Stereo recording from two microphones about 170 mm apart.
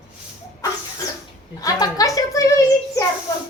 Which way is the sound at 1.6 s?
20° left (ahead or behind).